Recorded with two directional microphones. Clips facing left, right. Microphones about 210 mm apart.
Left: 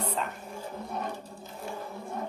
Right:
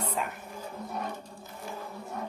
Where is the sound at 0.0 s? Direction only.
10° right (ahead or behind).